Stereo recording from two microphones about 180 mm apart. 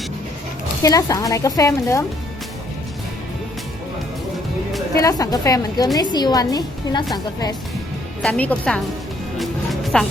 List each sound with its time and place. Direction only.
0.8 s a woman's voice: 20° left (ahead or behind)
4.9 s a woman's voice: 20° left (ahead or behind)
8.2 s a woman's voice: 5° left (ahead or behind)
9.4 s music: centre (ahead or behind)